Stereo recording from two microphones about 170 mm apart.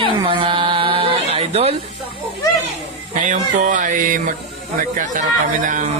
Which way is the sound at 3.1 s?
50° right (ahead or behind).